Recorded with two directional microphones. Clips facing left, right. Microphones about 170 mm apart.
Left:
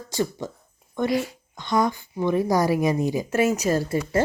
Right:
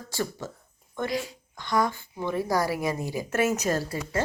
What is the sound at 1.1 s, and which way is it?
Speech, 60° left (ahead or behind).